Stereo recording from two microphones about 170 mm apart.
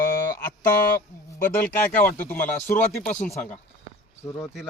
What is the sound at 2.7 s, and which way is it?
Speech, 15° left (ahead or behind).